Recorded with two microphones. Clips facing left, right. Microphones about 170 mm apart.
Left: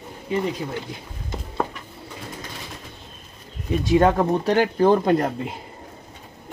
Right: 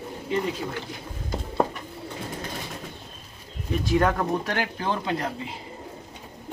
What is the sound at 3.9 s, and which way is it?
Speech, 30° left (ahead or behind).